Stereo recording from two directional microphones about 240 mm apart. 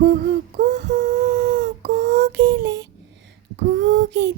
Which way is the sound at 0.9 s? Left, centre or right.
Right.